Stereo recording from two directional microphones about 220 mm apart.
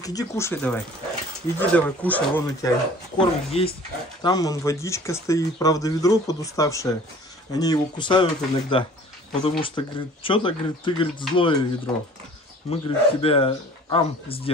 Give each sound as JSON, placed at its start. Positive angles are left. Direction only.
{"t": 0.0, "sound": "speech", "side_deg": 15}
{"t": 3.2, "sound": "speech", "side_deg": 25}